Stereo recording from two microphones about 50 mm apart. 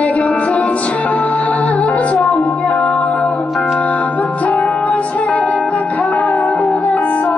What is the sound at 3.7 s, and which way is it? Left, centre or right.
Music, left.